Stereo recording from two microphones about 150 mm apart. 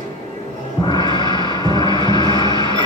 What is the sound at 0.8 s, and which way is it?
Music, 30° left (ahead or behind).